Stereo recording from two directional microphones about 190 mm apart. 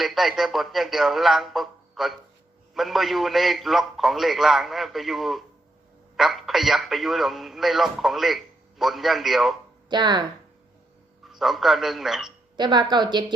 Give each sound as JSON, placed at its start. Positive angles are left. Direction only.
{"t": 0.0, "sound": "a man's voice", "side_deg": 0}
{"t": 9.9, "sound": "a woman's voice", "side_deg": -20}
{"t": 11.2, "sound": "a man's voice", "side_deg": 0}
{"t": 12.5, "sound": "a woman's voice", "side_deg": -25}